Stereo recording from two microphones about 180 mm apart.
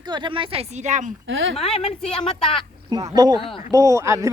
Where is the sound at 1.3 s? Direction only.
90° right.